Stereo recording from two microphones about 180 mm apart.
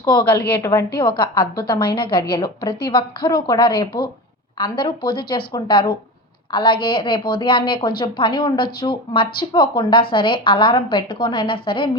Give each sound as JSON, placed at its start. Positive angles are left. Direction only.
{"t": 0.0, "sound": "a woman's voice", "side_deg": 25}
{"t": 0.3, "sound": "a woman's voice", "side_deg": 10}